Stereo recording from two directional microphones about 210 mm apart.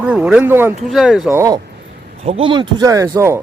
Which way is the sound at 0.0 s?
5° right (ahead or behind).